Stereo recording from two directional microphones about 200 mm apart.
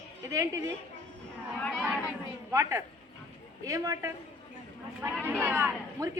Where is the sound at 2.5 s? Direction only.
15° right (ahead or behind).